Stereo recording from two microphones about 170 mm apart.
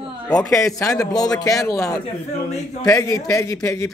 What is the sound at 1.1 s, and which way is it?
A man's voice, 20° left (ahead or behind).